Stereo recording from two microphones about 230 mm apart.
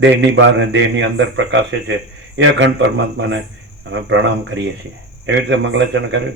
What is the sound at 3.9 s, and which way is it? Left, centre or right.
A man's voice, right.